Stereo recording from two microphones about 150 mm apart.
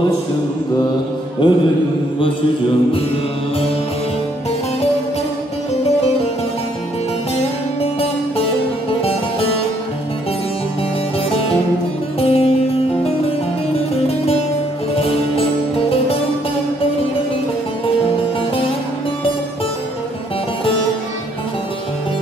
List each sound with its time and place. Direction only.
1.4 s mantra: 30° left (ahead or behind)
7.3 s music: 40° left (ahead or behind)
11.2 s music: 40° left (ahead or behind)
13.7 s music: 40° left (ahead or behind)